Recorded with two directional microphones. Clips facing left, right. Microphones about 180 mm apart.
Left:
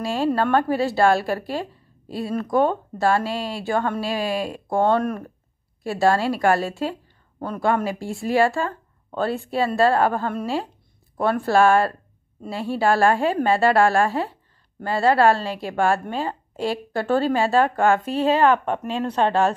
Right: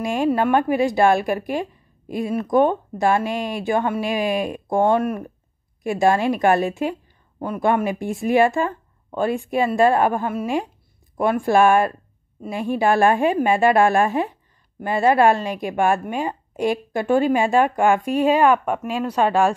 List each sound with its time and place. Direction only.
0.0 s a woman's voice: 15° right (ahead or behind)